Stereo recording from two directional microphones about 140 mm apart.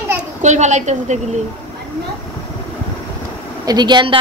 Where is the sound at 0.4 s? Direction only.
55° right (ahead or behind).